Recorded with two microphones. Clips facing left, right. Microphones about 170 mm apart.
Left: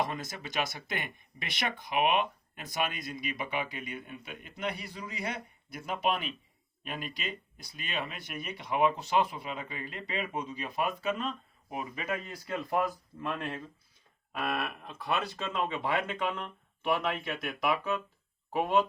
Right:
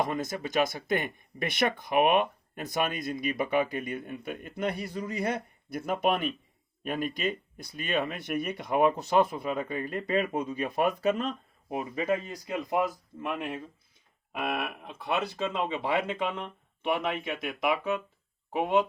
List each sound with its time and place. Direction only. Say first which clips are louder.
0.0 s speech: right 4 dB; 45° right (ahead or behind); by 12.4 s 30° right (ahead or behind)
12.5 s speech: right 2 dB; 15° right (ahead or behind)